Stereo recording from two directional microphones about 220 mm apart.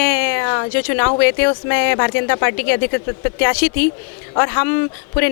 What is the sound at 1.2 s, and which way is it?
Speech, 15° left (ahead or behind).